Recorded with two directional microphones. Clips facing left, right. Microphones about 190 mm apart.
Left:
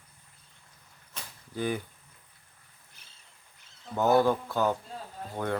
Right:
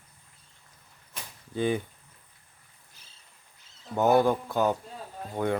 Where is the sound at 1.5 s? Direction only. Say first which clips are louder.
Right 4 dB; 20° right (ahead or behind).